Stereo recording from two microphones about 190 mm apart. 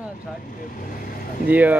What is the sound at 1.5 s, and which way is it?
Speech, 10° right (ahead or behind).